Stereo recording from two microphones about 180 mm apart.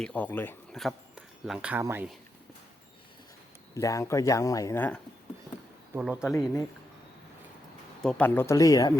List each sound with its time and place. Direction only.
0.0 s speech: 10° left (ahead or behind); by 2.0 s 10° right (ahead or behind)
3.8 s speech: 15° left (ahead or behind)
6.0 s speech: 5° right (ahead or behind)
6.3 s speech: 15° left (ahead or behind)
8.0 s speech: 10° left (ahead or behind)